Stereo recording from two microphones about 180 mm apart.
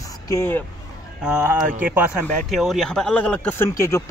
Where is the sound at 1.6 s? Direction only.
50° right (ahead or behind).